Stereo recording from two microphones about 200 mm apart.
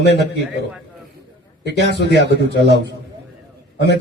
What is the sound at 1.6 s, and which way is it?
A man's voice, 55° left (ahead or behind).